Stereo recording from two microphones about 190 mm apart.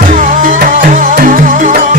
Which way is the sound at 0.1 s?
45° right (ahead or behind).